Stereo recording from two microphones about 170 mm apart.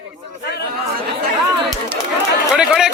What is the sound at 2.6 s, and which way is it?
Speech, 5° right (ahead or behind).